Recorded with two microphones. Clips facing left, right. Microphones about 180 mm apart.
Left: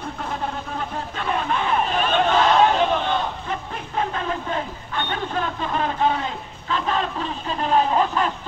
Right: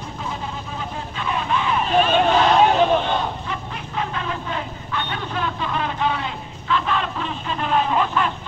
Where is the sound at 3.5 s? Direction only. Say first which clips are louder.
Left 1 dB; 40° left (ahead or behind).